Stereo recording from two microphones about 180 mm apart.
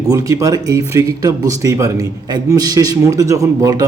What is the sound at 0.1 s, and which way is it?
A man's voice, 15° right (ahead or behind).